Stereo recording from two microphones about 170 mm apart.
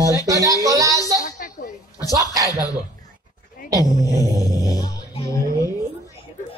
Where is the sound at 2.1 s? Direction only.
20° right (ahead or behind).